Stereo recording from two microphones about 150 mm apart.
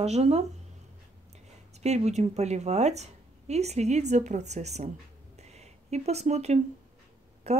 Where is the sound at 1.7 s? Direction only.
50° right (ahead or behind).